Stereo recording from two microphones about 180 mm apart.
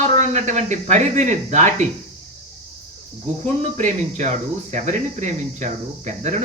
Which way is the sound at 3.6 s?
40° right (ahead or behind).